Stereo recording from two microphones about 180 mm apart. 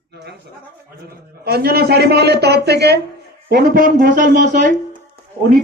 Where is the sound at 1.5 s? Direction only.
60° right (ahead or behind).